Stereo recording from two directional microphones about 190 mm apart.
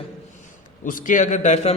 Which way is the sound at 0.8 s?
45° left (ahead or behind).